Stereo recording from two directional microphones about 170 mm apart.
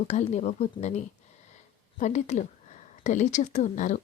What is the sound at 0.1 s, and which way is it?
Speech, 40° left (ahead or behind).